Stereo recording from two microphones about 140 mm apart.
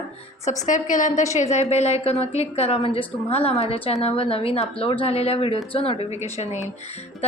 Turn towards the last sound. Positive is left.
turn(degrees=50)  # may be behind; listen again after turning